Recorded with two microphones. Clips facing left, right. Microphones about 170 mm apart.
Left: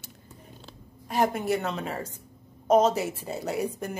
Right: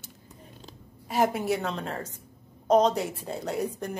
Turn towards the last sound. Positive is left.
turn(degrees=5)  # may be behind; listen again after turning